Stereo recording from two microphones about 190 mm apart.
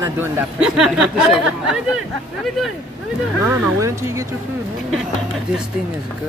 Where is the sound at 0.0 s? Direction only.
10° right (ahead or behind).